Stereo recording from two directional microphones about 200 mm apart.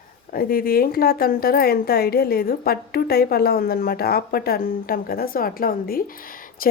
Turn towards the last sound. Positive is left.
turn(degrees=45)  # may be behind; listen again after turning